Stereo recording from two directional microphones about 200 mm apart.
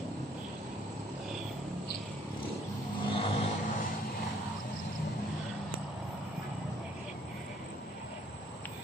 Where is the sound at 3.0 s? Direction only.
25° left (ahead or behind).